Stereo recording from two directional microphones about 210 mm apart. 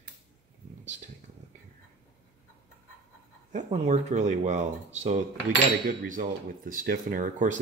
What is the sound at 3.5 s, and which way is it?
Coin, 35° right (ahead or behind).